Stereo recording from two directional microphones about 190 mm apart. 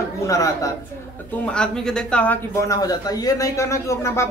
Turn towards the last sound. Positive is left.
turn(degrees=15)  # may be behind; listen again after turning